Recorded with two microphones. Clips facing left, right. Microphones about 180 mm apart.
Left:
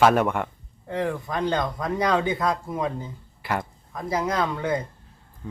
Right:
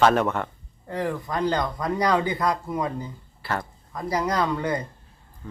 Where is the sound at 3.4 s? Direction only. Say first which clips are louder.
Left 1 dB; 15° left (ahead or behind).